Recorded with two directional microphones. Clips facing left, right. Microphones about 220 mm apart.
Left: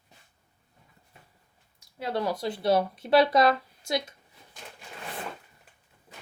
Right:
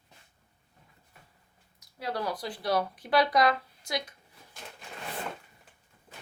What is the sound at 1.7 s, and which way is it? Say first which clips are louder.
Speech: left 4 dB; 25° left (ahead or behind).